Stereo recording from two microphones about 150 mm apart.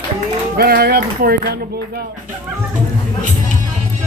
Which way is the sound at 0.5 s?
90° right.